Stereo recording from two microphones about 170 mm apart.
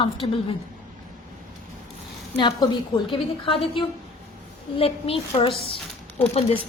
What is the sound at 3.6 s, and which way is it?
Speech, 30° left (ahead or behind).